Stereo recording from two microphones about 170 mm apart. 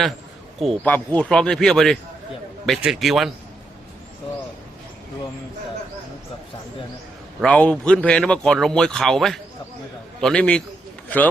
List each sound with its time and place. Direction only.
0.6 s speech: 5° left (ahead or behind)
7.4 s a man's voice: 5° left (ahead or behind)